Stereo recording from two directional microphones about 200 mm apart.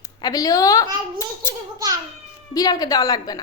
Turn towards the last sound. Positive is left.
turn(degrees=20)  # may be behind; listen again after turning